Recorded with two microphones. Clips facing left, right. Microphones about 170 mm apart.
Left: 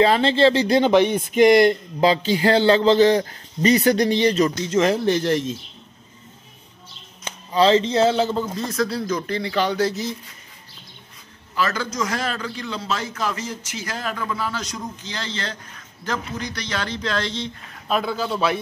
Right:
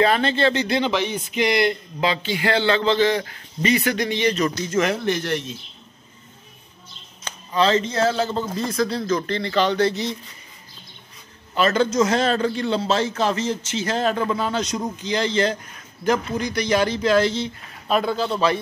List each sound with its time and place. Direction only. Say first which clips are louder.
0.0 s speech: left 3 dB; 25° left (ahead or behind)
7.2 s speech: left 3 dB; 30° left (ahead or behind)
8.5 s speech: right 1 dB; centre (ahead or behind)
11.5 s a man's voice: right 6 dB; 25° right (ahead or behind); by 18.6 s 5° left (ahead or behind)